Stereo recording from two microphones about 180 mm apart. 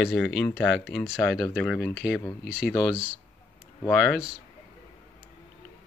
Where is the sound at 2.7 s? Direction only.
20° left (ahead or behind).